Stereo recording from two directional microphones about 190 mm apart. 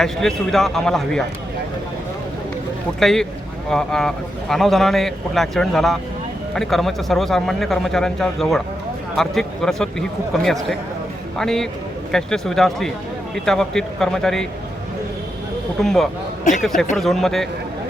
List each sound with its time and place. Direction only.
0.0 s a man's voice: centre (ahead or behind)
3.0 s a man's voice: centre (ahead or behind)
15.8 s a man's voice: centre (ahead or behind)
16.4 s speech: 40° left (ahead or behind)
17.0 s a man's voice: centre (ahead or behind)